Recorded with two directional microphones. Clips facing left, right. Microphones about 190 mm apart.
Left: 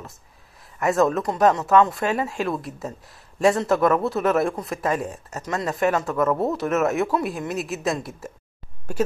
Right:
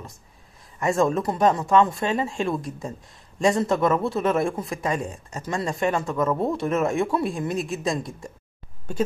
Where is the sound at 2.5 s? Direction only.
5° left (ahead or behind).